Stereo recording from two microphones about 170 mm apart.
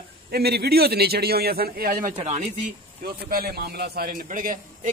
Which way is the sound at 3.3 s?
65° right (ahead or behind).